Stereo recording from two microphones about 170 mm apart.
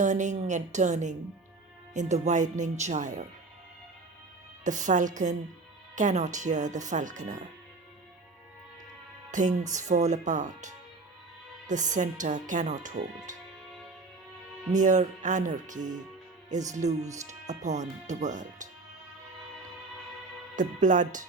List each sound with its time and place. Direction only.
0.0 s speech: 45° right (ahead or behind)
4.6 s speech: 45° right (ahead or behind)
9.3 s speech: 45° right (ahead or behind)
11.7 s speech: 45° right (ahead or behind)
14.7 s speech: 45° right (ahead or behind)
20.6 s speech: 50° right (ahead or behind)